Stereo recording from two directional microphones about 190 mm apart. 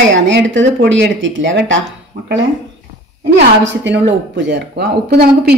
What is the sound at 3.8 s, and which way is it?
Speech, 70° right (ahead or behind).